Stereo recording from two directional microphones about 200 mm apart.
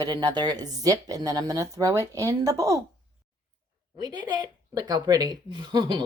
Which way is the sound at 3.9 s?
20° right (ahead or behind).